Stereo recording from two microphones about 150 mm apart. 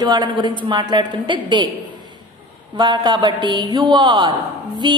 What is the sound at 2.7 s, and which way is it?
A woman's voice, 30° right (ahead or behind).